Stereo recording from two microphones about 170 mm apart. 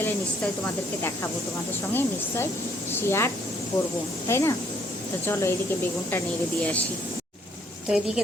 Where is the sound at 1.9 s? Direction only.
15° left (ahead or behind).